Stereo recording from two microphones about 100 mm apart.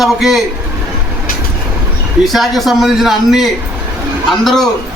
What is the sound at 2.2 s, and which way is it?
A man's voice, centre (ahead or behind).